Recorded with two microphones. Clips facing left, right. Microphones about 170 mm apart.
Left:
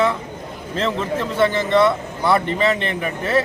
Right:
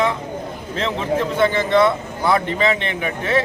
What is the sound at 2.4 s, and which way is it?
Speech, 35° left (ahead or behind).